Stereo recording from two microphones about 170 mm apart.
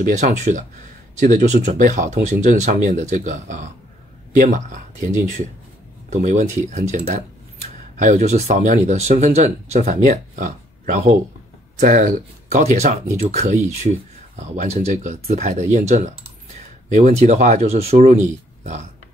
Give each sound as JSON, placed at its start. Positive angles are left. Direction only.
{"t": 0.0, "sound": "speech", "side_deg": -45}